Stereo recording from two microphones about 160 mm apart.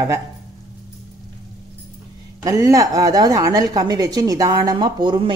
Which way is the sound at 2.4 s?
20° right (ahead or behind).